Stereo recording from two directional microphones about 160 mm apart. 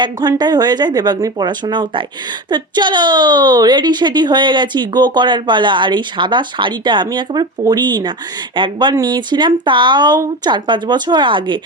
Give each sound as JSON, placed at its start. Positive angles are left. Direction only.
{"t": 0.0, "sound": "a woman's voice", "side_deg": -25}